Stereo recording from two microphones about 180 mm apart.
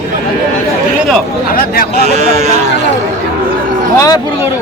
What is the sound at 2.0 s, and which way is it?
Speech, 40° right (ahead or behind).